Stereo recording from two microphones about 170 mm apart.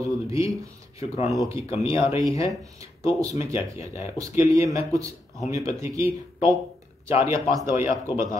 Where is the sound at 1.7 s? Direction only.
35° left (ahead or behind).